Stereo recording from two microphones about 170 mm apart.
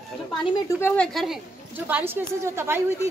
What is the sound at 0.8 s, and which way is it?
Speech, 5° left (ahead or behind).